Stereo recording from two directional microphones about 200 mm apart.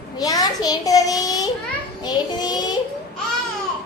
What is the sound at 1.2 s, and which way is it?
Child singing, 20° left (ahead or behind).